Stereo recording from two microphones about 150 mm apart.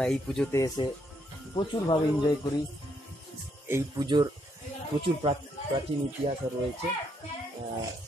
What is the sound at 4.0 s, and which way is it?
Speech, 30° right (ahead or behind).